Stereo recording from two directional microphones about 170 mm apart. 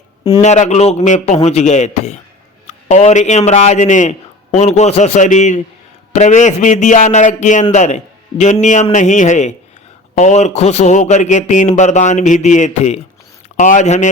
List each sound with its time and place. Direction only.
0.4 s a man's voice: 45° left (ahead or behind)